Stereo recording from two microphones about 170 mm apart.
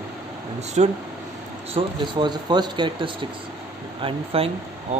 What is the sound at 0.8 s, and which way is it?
Speech, 40° right (ahead or behind).